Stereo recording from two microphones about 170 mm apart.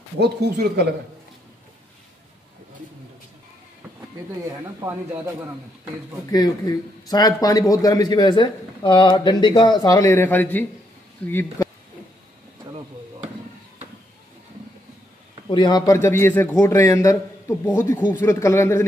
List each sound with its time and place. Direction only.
0.2 s speech: 75° right (ahead or behind)
4.5 s speech: 15° right (ahead or behind)
6.3 s a man's voice: 20° left (ahead or behind)
15.4 s a man's voice: 25° left (ahead or behind)